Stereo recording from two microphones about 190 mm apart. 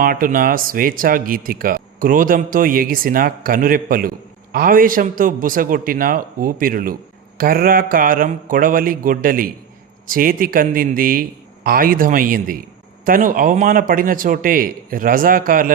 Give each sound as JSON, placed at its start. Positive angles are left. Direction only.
{"t": 0.0, "sound": "speech", "side_deg": -45}